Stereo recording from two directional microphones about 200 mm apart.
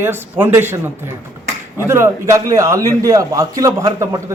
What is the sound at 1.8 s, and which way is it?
Speech, 10° right (ahead or behind).